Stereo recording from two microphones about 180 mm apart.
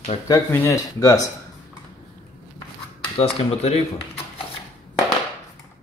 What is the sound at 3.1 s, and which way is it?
Speech, 35° left (ahead or behind).